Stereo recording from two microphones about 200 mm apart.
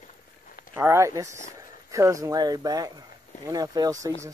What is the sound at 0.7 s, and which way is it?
Speech, 15° right (ahead or behind).